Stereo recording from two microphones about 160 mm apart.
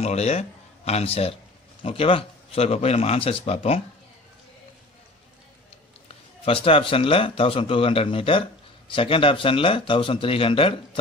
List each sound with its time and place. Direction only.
0.0 s speech: 40° left (ahead or behind)
6.0 s speech: 35° left (ahead or behind)